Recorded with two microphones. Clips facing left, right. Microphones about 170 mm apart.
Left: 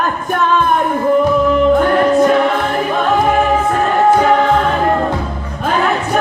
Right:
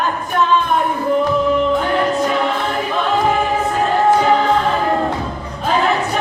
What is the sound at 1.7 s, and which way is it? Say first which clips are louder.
Music: left 6 dB; 50° left (ahead or behind).